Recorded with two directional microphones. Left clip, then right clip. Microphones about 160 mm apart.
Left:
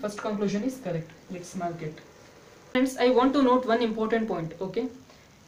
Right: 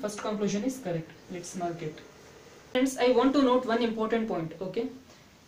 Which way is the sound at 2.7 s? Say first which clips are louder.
Left 2 dB; 15° left (ahead or behind).